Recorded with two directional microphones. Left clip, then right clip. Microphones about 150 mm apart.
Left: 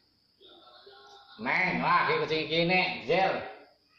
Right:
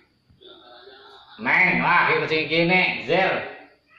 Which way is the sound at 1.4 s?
20° left (ahead or behind).